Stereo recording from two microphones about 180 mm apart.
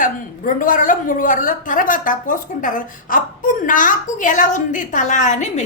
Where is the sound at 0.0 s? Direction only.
50° left (ahead or behind).